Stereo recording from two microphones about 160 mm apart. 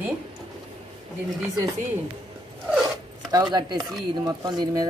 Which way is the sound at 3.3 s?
25° right (ahead or behind).